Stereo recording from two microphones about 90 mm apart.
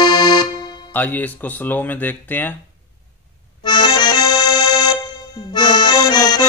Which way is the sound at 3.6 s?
55° left (ahead or behind).